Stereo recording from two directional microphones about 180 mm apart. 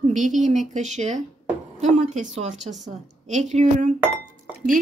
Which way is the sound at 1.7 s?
40° right (ahead or behind).